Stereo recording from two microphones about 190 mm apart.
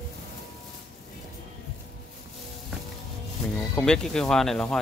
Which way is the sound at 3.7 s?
5° left (ahead or behind).